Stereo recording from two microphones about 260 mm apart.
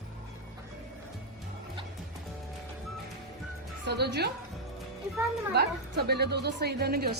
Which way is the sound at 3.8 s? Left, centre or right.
Right.